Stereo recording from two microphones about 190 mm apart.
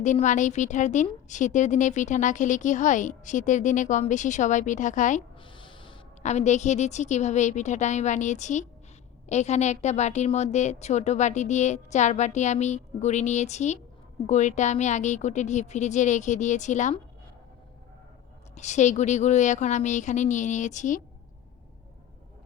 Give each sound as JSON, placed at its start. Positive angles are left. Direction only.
{"t": 0.0, "sound": "a woman's voice", "side_deg": 40}
{"t": 5.4, "sound": "a sound", "side_deg": 25}
{"t": 6.2, "sound": "a woman's voice", "side_deg": 40}
{"t": 18.5, "sound": "a woman's voice", "side_deg": 40}